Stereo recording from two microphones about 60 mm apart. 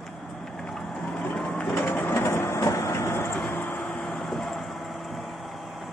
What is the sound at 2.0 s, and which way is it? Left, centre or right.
Train, left.